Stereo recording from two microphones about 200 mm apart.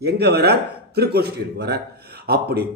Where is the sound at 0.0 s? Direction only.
55° right (ahead or behind).